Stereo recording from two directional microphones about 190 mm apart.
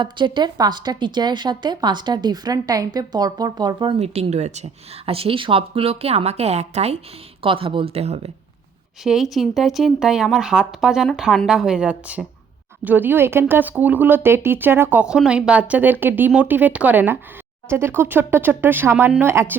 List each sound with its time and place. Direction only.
0.0 s speech: 25° right (ahead or behind)
9.0 s a woman's voice: centre (ahead or behind)